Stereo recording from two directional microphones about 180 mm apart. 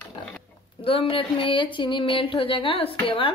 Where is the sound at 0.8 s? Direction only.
30° left (ahead or behind).